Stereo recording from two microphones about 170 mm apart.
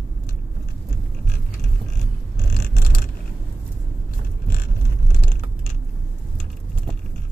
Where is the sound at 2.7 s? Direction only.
65° left (ahead or behind).